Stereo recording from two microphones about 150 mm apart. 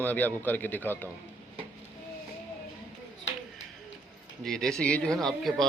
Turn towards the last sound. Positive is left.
turn(degrees=0)  # may be behind; listen again after turning